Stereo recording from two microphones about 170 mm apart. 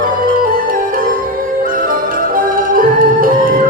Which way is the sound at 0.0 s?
55° right (ahead or behind).